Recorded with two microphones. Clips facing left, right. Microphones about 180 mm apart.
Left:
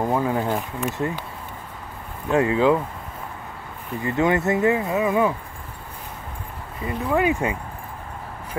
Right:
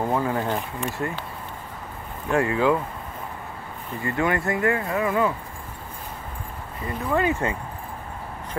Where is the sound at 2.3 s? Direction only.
20° left (ahead or behind).